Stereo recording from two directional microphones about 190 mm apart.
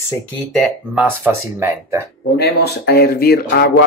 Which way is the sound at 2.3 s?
60° left (ahead or behind).